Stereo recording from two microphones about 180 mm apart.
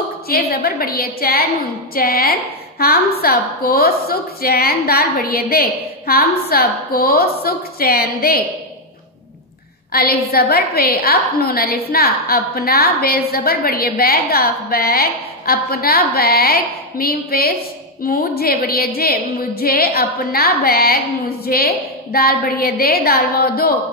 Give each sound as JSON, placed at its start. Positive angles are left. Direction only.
{"t": 0.3, "sound": "a woman's voice", "side_deg": 55}
{"t": 9.9, "sound": "a woman's voice", "side_deg": 55}